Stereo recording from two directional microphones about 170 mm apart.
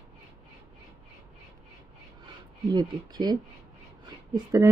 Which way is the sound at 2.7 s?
25° right (ahead or behind).